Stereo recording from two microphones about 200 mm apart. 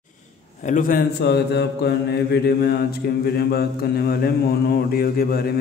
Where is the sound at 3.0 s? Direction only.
50° left (ahead or behind).